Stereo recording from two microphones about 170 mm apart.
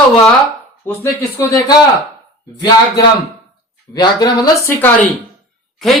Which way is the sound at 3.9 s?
25° left (ahead or behind).